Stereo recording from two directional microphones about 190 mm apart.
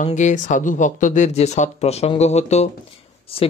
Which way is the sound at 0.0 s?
40° left (ahead or behind).